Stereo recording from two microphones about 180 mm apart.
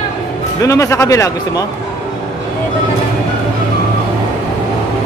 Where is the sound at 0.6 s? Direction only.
15° left (ahead or behind).